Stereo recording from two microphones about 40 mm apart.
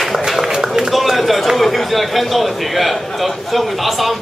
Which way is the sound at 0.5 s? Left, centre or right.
Centre.